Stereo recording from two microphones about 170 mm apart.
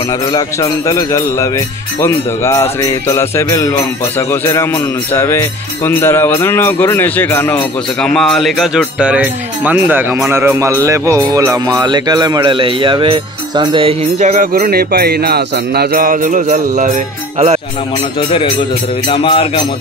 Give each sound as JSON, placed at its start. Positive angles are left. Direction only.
{"t": 0.3, "sound": "speech", "side_deg": 20}
{"t": 19.0, "sound": "music", "side_deg": 30}